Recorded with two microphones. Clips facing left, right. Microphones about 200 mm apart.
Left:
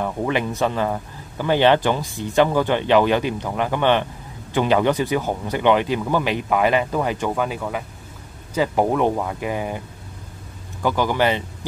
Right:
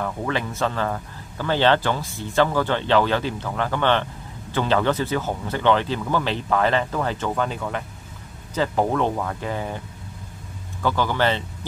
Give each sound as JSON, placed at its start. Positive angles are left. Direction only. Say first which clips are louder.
{"t": 0.0, "sound": "speech", "louder": "left 4 dB", "side_deg": 20}
{"t": 10.8, "sound": "speech", "louder": "left 2 dB", "side_deg": 15}